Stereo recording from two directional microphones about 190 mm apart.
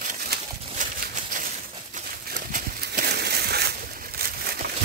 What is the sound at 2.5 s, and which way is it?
Horse, 55° right (ahead or behind).